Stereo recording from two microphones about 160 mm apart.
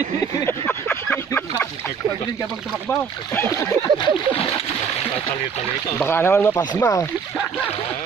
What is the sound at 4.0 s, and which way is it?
Speech, 30° left (ahead or behind).